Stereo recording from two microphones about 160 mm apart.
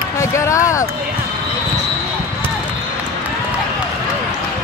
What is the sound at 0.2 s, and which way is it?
Speech, 20° left (ahead or behind).